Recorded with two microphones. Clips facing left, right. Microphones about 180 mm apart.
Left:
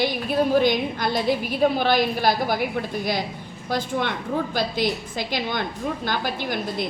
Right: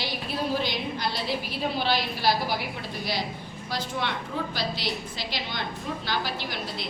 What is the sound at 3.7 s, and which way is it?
A woman's voice, 50° left (ahead or behind).